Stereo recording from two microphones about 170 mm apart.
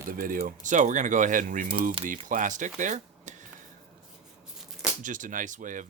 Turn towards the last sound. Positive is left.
turn(degrees=-50)  # may be behind; listen again after turning